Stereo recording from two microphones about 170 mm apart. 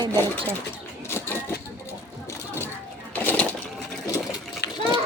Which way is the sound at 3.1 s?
10° left (ahead or behind).